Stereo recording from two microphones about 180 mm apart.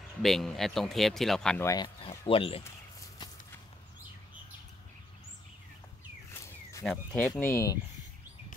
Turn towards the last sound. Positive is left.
turn(degrees=15)  # may be behind; listen again after turning